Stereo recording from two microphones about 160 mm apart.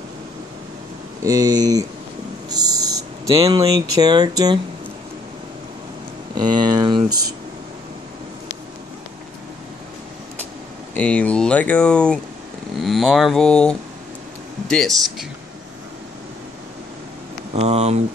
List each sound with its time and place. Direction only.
1.2 s speech: 25° right (ahead or behind)
6.3 s speech: 25° right (ahead or behind)
11.0 s speech: 10° left (ahead or behind)
17.6 s speech: 40° right (ahead or behind)